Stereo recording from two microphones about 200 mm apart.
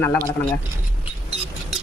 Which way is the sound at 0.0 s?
10° left (ahead or behind).